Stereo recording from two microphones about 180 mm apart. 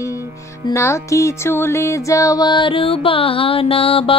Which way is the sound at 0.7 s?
15° left (ahead or behind).